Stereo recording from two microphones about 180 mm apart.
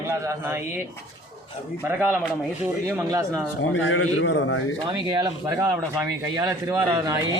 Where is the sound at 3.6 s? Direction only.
90° left.